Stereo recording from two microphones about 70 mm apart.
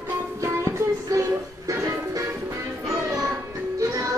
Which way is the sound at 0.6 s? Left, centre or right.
Right.